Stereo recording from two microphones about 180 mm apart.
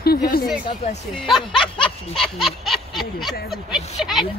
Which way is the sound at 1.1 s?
Centre (ahead or behind).